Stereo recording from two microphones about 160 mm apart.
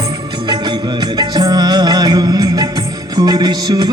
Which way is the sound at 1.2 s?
25° right (ahead or behind).